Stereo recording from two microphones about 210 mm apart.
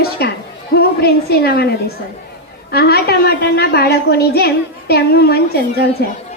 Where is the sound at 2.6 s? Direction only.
50° left (ahead or behind).